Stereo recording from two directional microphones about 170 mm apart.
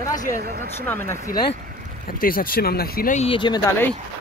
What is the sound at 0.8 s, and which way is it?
Speech, 10° left (ahead or behind).